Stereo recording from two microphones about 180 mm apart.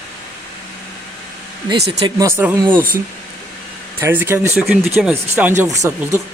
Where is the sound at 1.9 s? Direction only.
30° right (ahead or behind).